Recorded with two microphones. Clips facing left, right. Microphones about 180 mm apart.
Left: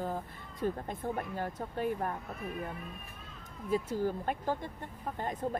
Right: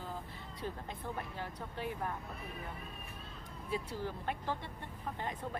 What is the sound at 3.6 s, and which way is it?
Speech, 45° left (ahead or behind).